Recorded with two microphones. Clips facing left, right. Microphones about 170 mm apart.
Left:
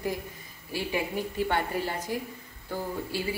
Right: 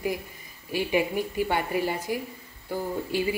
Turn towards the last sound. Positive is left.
turn(degrees=-15)  # may be behind; listen again after turning